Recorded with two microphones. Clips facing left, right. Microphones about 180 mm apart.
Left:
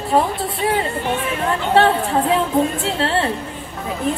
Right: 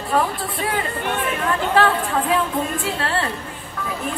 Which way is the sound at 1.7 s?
25° left (ahead or behind).